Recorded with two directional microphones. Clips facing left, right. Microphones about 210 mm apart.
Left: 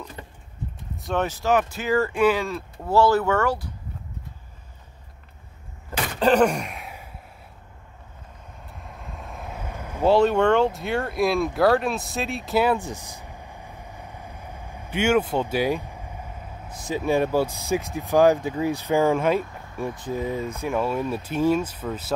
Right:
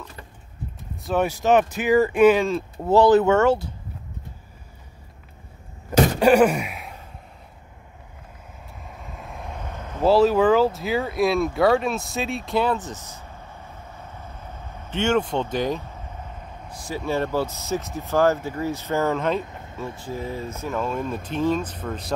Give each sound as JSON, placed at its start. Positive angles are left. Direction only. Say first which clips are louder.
{"t": 1.0, "sound": "speech", "louder": "right 3 dB", "side_deg": -10}
{"t": 6.1, "sound": "gasp", "louder": "even", "side_deg": -10}
{"t": 8.8, "sound": "vehicle", "louder": "even", "side_deg": 0}
{"t": 10.0, "sound": "speech", "louder": "right 1 dB", "side_deg": 0}
{"t": 19.4, "sound": "vehicle", "louder": "right 1 dB", "side_deg": -20}
{"t": 20.0, "sound": "speech", "louder": "left 3 dB", "side_deg": 20}